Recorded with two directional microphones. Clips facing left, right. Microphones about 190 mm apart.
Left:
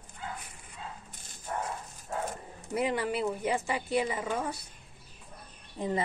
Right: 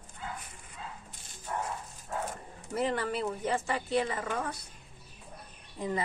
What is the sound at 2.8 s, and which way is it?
Speech, 10° left (ahead or behind).